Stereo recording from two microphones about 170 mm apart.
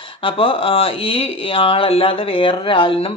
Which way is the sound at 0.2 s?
30° left (ahead or behind).